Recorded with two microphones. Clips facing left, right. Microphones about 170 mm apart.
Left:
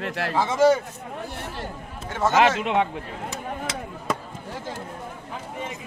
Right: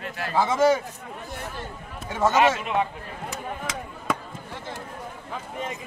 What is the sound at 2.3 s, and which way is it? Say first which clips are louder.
Speech: left 4 dB; 90° left.